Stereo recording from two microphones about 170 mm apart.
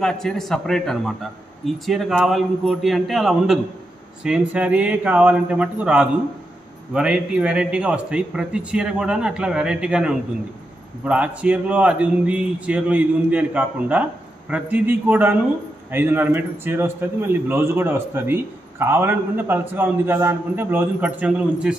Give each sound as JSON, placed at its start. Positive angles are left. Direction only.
{"t": 0.0, "sound": "a man's voice", "side_deg": 5}